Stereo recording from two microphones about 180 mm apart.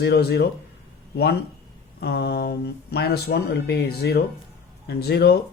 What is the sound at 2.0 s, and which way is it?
Speech, 60° left (ahead or behind).